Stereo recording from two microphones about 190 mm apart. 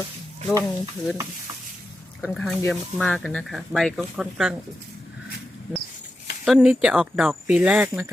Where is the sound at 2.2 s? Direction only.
5° left (ahead or behind).